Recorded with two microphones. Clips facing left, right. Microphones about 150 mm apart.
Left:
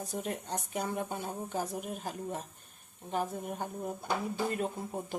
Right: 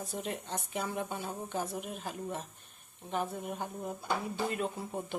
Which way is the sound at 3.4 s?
45° left (ahead or behind).